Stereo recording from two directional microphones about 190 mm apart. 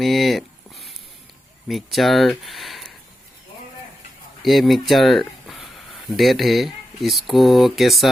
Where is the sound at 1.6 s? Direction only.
Centre (ahead or behind).